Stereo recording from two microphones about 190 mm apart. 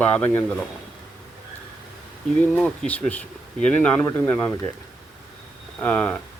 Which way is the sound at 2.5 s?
10° left (ahead or behind).